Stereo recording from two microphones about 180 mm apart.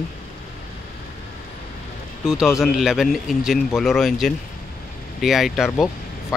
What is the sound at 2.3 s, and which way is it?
Speech, centre (ahead or behind).